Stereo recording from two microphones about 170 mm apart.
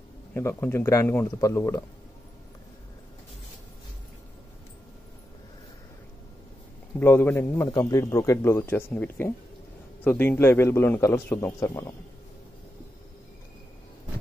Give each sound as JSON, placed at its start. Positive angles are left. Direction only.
{"t": 0.3, "sound": "a man's voice", "side_deg": 15}
{"t": 7.0, "sound": "a man's voice", "side_deg": 10}